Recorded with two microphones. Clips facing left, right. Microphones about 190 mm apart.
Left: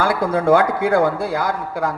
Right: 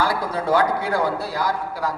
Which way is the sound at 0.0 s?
50° left (ahead or behind).